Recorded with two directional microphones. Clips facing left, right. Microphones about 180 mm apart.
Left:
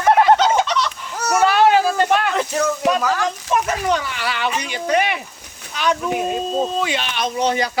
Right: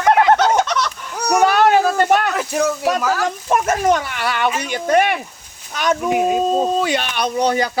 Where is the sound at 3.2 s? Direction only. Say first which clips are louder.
Right 2 dB; 50° right (ahead or behind).